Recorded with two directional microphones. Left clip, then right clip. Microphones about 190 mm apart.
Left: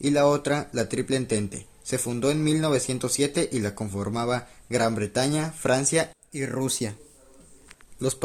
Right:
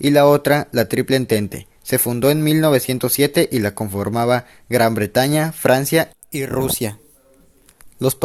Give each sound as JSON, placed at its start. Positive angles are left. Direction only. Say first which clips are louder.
{"t": 0.0, "sound": "speech", "louder": "right 9 dB", "side_deg": -35}
{"t": 6.3, "sound": "speech", "louder": "right 8 dB", "side_deg": -50}
{"t": 7.9, "sound": "speech", "louder": "right 8 dB", "side_deg": -35}